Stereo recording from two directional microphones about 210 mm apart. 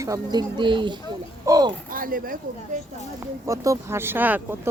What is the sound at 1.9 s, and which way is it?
Speech, 40° right (ahead or behind).